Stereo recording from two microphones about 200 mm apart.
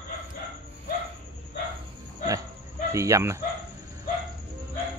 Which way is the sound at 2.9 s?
15° right (ahead or behind).